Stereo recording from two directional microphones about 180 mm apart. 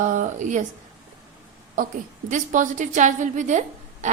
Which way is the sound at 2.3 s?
45° right (ahead or behind).